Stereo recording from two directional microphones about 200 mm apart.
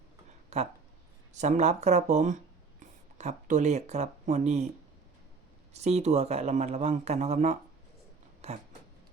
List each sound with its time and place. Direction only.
0.5 s a man's voice: 35° right (ahead or behind)
5.7 s a man's voice: 35° right (ahead or behind)
8.4 s a sound: 35° right (ahead or behind)